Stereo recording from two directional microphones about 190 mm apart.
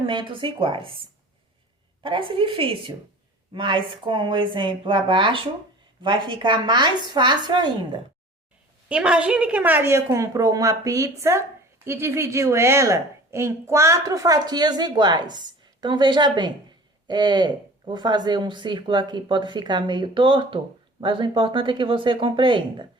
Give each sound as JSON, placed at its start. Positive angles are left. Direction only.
{"t": 0.0, "sound": "speech", "side_deg": -25}
{"t": 8.9, "sound": "a woman's voice", "side_deg": -5}